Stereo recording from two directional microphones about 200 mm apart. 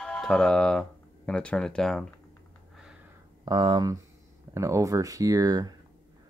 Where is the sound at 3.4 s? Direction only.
20° right (ahead or behind).